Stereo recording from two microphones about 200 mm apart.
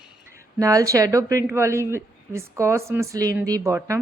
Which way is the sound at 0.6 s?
15° right (ahead or behind).